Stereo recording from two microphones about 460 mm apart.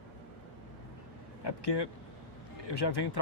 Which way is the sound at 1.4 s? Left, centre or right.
Left.